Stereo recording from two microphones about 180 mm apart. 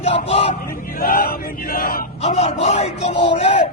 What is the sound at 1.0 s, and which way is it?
Chant, 50° left (ahead or behind).